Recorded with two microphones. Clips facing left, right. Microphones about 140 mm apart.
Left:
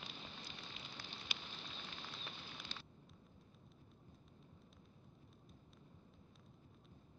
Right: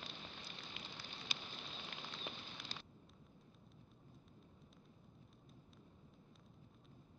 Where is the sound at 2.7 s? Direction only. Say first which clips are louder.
Right 1 dB; 40° right (ahead or behind).